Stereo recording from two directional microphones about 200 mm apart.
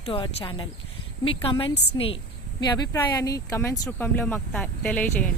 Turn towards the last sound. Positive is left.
turn(degrees=5)  # may be behind; listen again after turning